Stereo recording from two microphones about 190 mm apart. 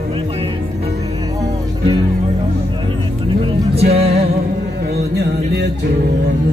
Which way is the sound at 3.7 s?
30° right (ahead or behind).